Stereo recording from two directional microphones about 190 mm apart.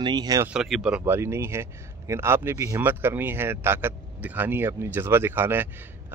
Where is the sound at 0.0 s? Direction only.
20° right (ahead or behind).